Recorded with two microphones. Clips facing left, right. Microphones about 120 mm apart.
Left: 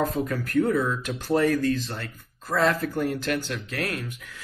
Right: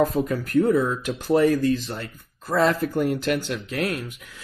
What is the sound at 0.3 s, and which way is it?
Speech, 20° right (ahead or behind).